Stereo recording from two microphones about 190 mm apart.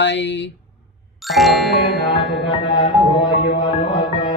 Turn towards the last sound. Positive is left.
turn(degrees=25)  # may be behind; listen again after turning